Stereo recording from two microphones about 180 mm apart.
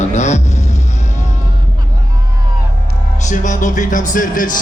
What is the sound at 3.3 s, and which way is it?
A man's voice, 45° left (ahead or behind).